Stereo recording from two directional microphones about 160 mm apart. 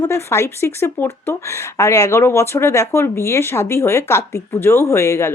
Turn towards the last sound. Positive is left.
turn(degrees=15)  # may be behind; listen again after turning